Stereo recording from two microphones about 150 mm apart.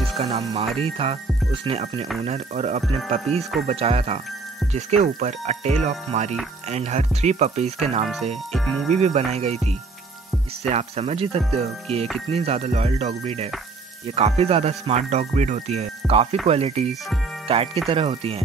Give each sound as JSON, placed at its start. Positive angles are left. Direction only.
{"t": 0.2, "sound": "speech", "side_deg": -45}
{"t": 8.5, "sound": "speech", "side_deg": 5}
{"t": 8.9, "sound": "speech", "side_deg": -45}
{"t": 10.7, "sound": "speech", "side_deg": -45}